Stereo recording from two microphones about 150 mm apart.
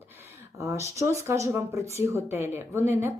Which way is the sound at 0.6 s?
20° right (ahead or behind).